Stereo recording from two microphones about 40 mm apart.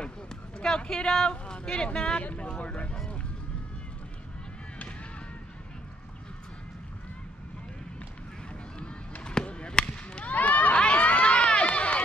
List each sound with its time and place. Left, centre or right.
0.6 s speech: left
9.2 s chop: left
10.2 s a sound: left
10.8 s run: left